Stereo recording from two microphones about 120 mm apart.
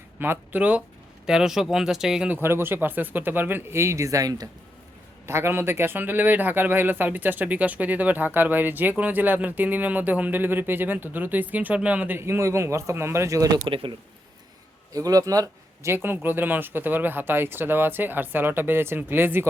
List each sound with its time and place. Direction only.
0.2 s a man's voice: 15° right (ahead or behind)
2.3 s a man's voice: 20° right (ahead or behind)
13.7 s speech: 50° right (ahead or behind)
14.9 s a man's voice: 30° right (ahead or behind)